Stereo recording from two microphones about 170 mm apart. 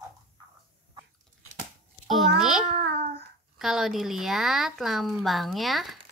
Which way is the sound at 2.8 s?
75° right (ahead or behind).